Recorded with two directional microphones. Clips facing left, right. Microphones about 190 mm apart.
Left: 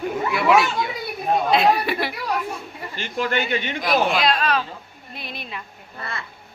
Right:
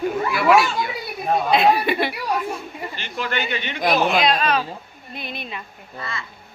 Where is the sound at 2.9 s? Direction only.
45° left (ahead or behind).